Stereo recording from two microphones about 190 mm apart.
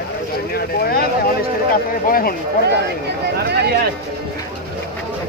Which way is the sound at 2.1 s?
50° left (ahead or behind).